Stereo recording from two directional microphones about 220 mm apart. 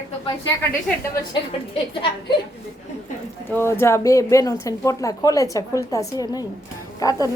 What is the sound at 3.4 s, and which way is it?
A woman's voice, 10° left (ahead or behind).